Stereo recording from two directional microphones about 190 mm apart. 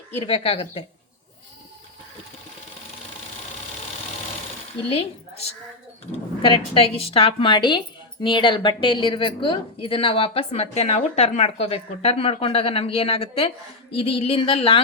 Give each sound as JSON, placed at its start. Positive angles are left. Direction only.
{"t": 0.2, "sound": "a woman's voice", "side_deg": 30}
{"t": 4.9, "sound": "a woman's voice", "side_deg": 30}